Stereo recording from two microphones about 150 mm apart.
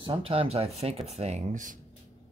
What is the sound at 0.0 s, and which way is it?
Speech, 35° right (ahead or behind).